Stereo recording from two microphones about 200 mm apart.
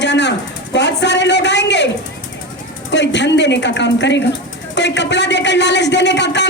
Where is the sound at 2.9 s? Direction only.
60° left (ahead or behind).